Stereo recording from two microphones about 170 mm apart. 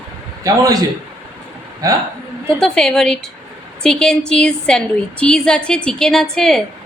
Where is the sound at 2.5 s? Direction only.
5° left (ahead or behind).